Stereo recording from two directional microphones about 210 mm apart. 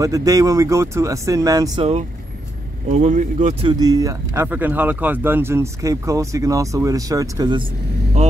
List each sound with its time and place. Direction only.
0.0 s speech: 15° right (ahead or behind)
2.9 s speech: 35° right (ahead or behind)
3.7 s speech: 20° right (ahead or behind)